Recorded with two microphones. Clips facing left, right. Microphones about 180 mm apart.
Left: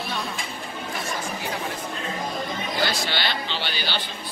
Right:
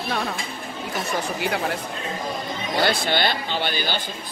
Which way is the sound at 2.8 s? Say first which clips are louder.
Right 6 dB; 55° right (ahead or behind).